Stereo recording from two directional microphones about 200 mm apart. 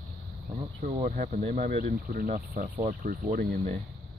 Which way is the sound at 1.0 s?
40° right (ahead or behind).